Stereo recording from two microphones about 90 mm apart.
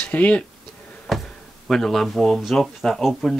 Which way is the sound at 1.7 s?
5° left (ahead or behind).